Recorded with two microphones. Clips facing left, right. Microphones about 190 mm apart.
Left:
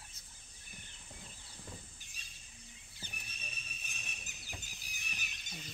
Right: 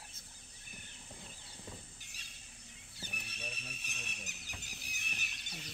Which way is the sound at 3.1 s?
65° right (ahead or behind).